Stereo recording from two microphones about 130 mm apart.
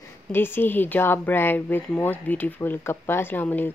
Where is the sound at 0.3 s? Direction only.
15° left (ahead or behind).